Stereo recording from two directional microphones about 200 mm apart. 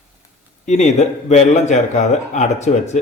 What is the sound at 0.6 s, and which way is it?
A man's voice, 35° left (ahead or behind).